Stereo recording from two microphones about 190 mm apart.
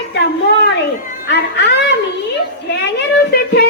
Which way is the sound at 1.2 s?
60° left (ahead or behind).